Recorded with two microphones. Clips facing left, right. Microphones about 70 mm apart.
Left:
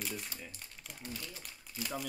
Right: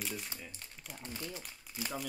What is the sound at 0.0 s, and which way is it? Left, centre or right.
Crumpling, centre.